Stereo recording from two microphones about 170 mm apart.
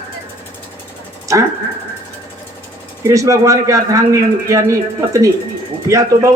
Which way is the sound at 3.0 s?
20° right (ahead or behind).